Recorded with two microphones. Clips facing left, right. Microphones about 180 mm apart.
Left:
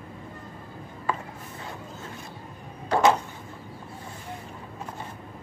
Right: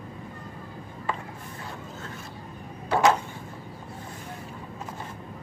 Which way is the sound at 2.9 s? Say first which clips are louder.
Left 1 dB; 5° right (ahead or behind).